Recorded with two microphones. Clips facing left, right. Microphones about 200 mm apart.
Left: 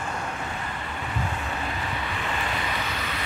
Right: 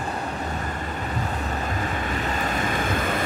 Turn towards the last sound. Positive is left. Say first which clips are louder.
# right 7 dB
turn(degrees=-50)  # may be behind; listen again after turning